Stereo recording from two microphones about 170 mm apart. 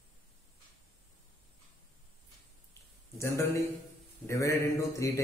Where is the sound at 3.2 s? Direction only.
15° left (ahead or behind).